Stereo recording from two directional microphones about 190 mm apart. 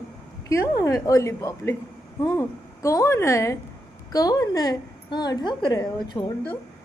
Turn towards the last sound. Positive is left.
turn(degrees=25)  # may be behind; listen again after turning